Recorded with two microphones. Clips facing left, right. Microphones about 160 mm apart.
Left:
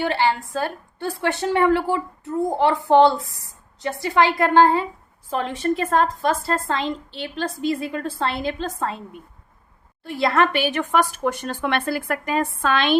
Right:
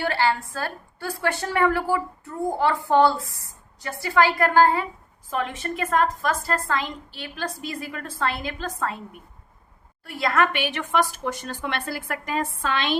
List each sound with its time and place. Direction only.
0.0 s a woman's voice: 20° left (ahead or behind)
10.0 s a woman's voice: 30° left (ahead or behind)
10.9 s a woman's voice: 60° left (ahead or behind)